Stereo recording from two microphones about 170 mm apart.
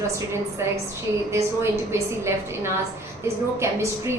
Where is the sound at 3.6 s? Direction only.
15° right (ahead or behind).